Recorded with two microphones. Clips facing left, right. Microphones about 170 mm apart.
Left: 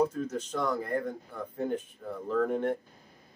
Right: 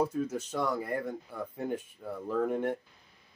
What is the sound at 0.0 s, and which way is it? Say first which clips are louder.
Speech: left 2 dB; 10° right (ahead or behind).